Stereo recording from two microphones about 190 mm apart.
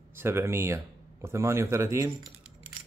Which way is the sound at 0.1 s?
10° right (ahead or behind).